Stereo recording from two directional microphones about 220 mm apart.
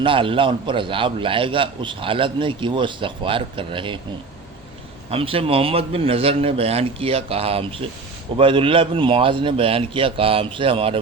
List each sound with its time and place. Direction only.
0.0 s a man's voice: 25° right (ahead or behind)
5.1 s a man's voice: 25° right (ahead or behind)